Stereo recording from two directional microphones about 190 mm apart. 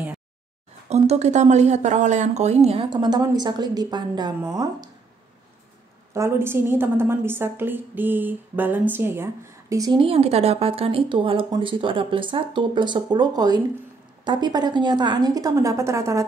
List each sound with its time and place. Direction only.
0.8 s speech: 35° right (ahead or behind)
6.1 s a woman's voice: 15° right (ahead or behind)